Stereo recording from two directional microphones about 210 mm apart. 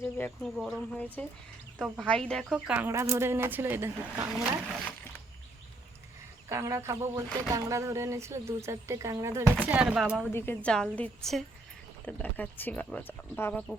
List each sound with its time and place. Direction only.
0.0 s speech: 5° left (ahead or behind); by 4.3 s 10° right (ahead or behind)
6.5 s speech: 15° right (ahead or behind)
10.3 s speech: 10° left (ahead or behind)